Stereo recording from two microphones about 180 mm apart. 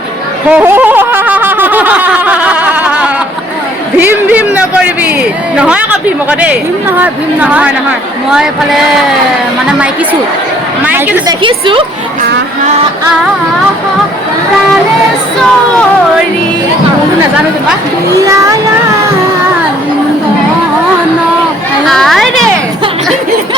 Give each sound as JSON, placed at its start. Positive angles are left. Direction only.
{"t": 0.5, "sound": "a sound", "side_deg": -10}
{"t": 5.5, "sound": "chatter", "side_deg": -5}
{"t": 6.4, "sound": "a woman's voice", "side_deg": -10}
{"t": 11.3, "sound": "a woman's voice", "side_deg": -30}
{"t": 21.8, "sound": "speech", "side_deg": 0}